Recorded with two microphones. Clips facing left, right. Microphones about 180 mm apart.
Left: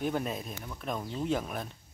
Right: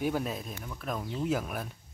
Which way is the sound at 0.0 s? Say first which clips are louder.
Right 1 dB; centre (ahead or behind).